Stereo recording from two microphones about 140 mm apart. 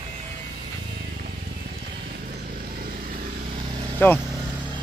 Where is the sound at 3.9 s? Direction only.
15° left (ahead or behind).